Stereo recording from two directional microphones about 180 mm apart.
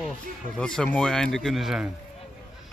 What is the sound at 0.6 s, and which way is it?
Speech, 5° left (ahead or behind).